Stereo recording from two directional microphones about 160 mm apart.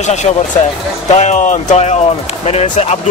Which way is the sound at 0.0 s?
45° left (ahead or behind).